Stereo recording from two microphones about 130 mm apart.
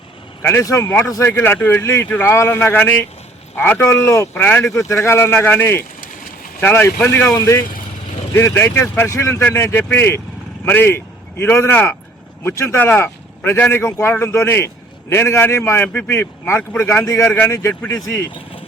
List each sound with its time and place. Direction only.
0.4 s speech: 20° left (ahead or behind)